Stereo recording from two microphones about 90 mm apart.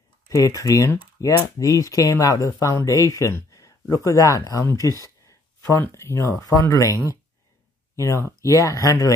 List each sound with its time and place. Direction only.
0.3 s speech: 35° left (ahead or behind)